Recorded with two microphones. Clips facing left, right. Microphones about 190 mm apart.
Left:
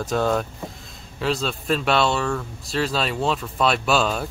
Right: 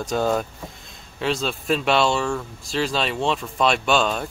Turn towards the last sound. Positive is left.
turn(degrees=5)  # may be behind; listen again after turning